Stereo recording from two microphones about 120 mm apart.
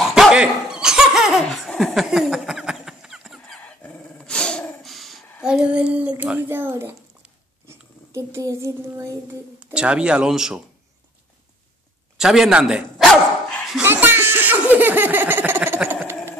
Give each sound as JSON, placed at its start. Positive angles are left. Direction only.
{"t": 0.0, "sound": "laughter", "side_deg": -5}
{"t": 1.7, "sound": "a sound", "side_deg": 0}
{"t": 3.6, "sound": "dog", "side_deg": 10}
{"t": 7.6, "sound": "speech", "side_deg": -20}
{"t": 9.6, "sound": "speech", "side_deg": -10}
{"t": 12.2, "sound": "speech", "side_deg": -5}
{"t": 13.9, "sound": "laughter", "side_deg": -20}